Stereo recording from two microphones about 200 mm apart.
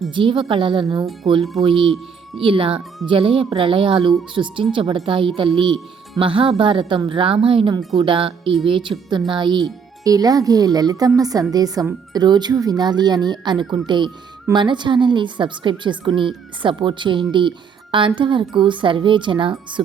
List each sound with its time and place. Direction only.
0.1 s speech: 25° right (ahead or behind)